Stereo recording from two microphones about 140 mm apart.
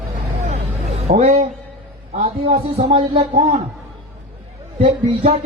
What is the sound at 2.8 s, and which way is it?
Speech, 40° right (ahead or behind).